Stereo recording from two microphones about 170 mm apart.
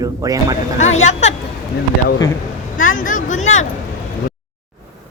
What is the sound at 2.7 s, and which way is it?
Speech, 50° left (ahead or behind).